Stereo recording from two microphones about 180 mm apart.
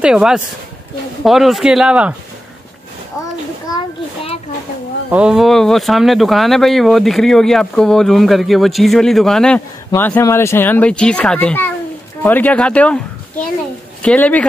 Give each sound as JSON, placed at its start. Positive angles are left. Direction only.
{"t": 0.0, "sound": "speech", "side_deg": -5}
{"t": 3.7, "sound": "a sound", "side_deg": 30}
{"t": 5.1, "sound": "speech", "side_deg": -5}
{"t": 14.0, "sound": "speech", "side_deg": 10}